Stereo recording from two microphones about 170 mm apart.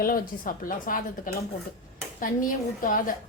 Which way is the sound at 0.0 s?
55° left (ahead or behind).